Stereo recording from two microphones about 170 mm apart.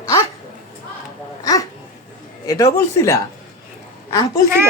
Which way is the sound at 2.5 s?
20° left (ahead or behind).